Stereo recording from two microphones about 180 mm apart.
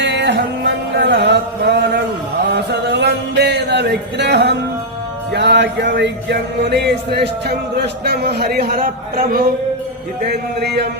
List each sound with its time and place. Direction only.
0.0 s music: 75° right (ahead or behind); by 9.4 s 50° right (ahead or behind)
10.2 s speech: 65° right (ahead or behind)